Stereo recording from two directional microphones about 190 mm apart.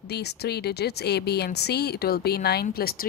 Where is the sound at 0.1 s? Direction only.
60° left (ahead or behind).